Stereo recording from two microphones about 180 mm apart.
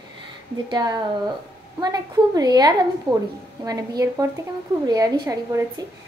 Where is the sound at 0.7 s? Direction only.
25° right (ahead or behind).